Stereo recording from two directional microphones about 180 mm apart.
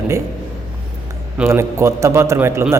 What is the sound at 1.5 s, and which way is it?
A man's voice, 15° right (ahead or behind).